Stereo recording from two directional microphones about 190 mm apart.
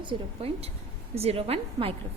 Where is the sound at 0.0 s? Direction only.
30° right (ahead or behind).